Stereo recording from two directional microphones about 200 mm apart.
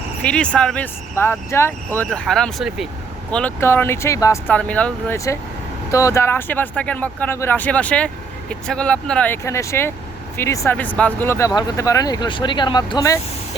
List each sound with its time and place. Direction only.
0.2 s speech: 5° left (ahead or behind)
3.3 s speech: 10° left (ahead or behind)